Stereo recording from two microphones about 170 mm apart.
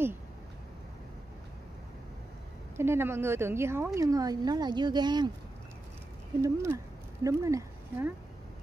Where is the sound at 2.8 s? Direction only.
15° right (ahead or behind).